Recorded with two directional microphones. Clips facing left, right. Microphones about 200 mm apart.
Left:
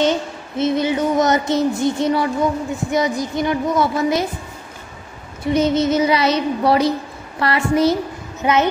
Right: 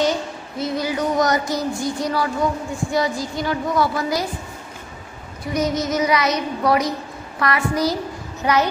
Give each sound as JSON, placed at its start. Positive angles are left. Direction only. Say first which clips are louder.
{"t": 0.6, "sound": "child singing", "louder": "left 5 dB", "side_deg": 25}
{"t": 5.4, "sound": "child singing", "louder": "left 5 dB", "side_deg": 25}